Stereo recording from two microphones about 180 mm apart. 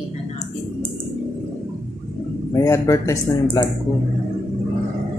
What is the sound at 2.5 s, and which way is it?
Speech, 20° left (ahead or behind).